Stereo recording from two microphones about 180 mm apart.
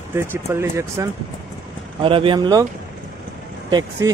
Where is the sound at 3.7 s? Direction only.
20° right (ahead or behind).